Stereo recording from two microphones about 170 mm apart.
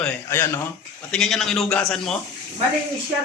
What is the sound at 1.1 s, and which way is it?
A man's voice, centre (ahead or behind).